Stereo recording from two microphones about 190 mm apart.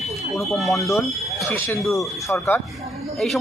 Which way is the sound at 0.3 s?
Centre (ahead or behind).